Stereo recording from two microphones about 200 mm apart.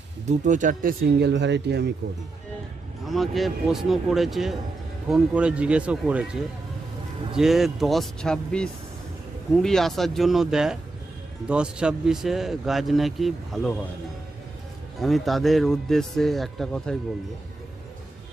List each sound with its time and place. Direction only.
0.3 s speech: 40° right (ahead or behind); by 1.9 s 55° right (ahead or behind)
3.1 s speech: centre (ahead or behind)
7.3 s speech: centre (ahead or behind)
15.0 s speech: centre (ahead or behind)